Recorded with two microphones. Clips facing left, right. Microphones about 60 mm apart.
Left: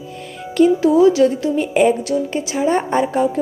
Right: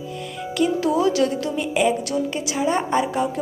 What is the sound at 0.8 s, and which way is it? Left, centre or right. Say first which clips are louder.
A woman's voice: left 6 dB; left.